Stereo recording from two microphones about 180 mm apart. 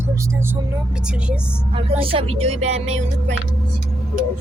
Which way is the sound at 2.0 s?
30° right (ahead or behind).